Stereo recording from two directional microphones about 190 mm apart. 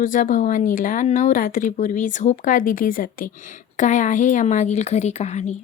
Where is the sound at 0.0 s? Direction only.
45° left (ahead or behind).